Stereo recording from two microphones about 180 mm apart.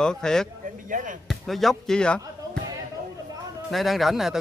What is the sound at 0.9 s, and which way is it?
Speech, 45° right (ahead or behind).